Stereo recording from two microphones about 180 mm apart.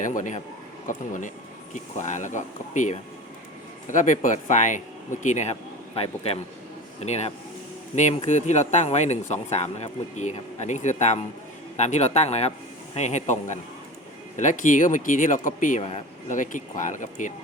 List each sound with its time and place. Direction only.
0.0 s speech: 45° left (ahead or behind)